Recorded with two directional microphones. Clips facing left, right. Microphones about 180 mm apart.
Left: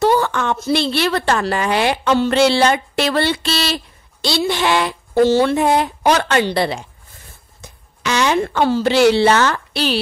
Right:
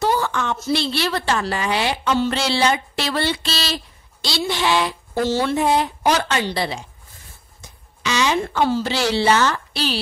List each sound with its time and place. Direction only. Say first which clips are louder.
0.0 s a woman's voice: left 5 dB; 60° left (ahead or behind)
8.0 s a woman's voice: left 3 dB; 55° left (ahead or behind)